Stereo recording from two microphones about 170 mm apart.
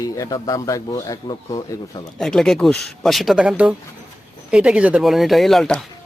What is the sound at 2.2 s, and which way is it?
Speech, 5° left (ahead or behind).